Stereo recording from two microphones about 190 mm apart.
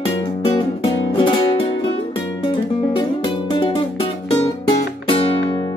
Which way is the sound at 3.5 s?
25° left (ahead or behind).